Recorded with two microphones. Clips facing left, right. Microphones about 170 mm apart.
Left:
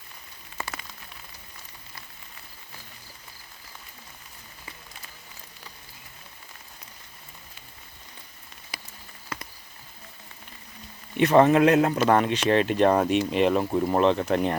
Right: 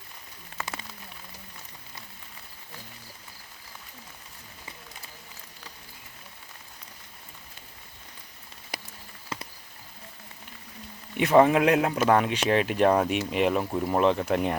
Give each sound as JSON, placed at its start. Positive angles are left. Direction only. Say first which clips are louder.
{"t": 8.7, "sound": "rain on surface", "louder": "right 4 dB", "side_deg": -60}
{"t": 9.3, "sound": "a sound", "louder": "right 1 dB", "side_deg": -25}
{"t": 11.2, "sound": "speech", "louder": "left 2 dB", "side_deg": -10}